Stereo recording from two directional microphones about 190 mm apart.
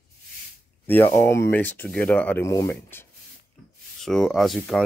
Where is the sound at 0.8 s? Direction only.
10° left (ahead or behind).